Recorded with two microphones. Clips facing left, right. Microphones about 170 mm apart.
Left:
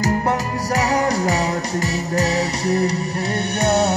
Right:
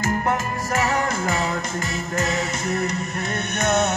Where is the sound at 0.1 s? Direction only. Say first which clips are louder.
Left 3 dB; 35° left (ahead or behind).